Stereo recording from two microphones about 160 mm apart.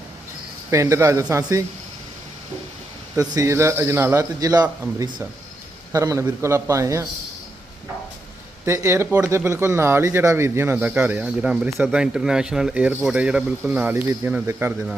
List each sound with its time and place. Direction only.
0.7 s a man's voice: 20° right (ahead or behind)
3.2 s a man's voice: 20° right (ahead or behind)
5.9 s a man's voice: 20° right (ahead or behind)
8.6 s speech: 15° right (ahead or behind)